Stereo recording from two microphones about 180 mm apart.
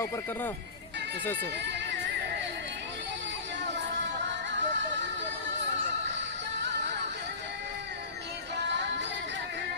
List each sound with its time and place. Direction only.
1.2 s speech: 10° left (ahead or behind)
4.5 s music: 90° right